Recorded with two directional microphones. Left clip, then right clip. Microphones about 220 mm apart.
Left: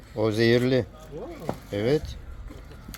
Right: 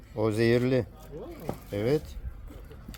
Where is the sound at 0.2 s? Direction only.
5° right (ahead or behind).